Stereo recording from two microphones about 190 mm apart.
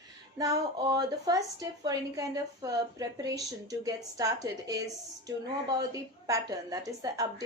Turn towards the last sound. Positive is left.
turn(degrees=-20)  # may be behind; listen again after turning